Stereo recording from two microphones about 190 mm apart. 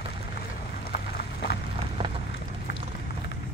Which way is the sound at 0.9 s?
60° left (ahead or behind).